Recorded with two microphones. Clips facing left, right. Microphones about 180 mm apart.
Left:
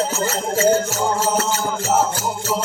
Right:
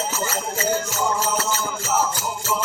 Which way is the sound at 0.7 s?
45° left (ahead or behind).